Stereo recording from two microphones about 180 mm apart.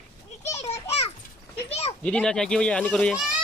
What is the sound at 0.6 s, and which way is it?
Children playing, 35° left (ahead or behind).